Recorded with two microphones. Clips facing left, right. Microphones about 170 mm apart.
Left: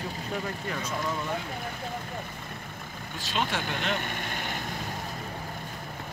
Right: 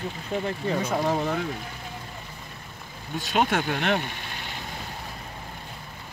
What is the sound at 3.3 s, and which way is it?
Speech, 55° right (ahead or behind).